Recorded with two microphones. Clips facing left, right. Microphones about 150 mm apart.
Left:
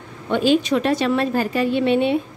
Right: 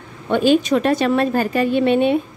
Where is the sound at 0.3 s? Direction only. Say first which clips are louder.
Right 2 dB; 50° right (ahead or behind).